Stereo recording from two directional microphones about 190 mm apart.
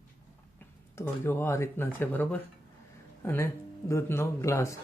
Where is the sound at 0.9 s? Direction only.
10° left (ahead or behind).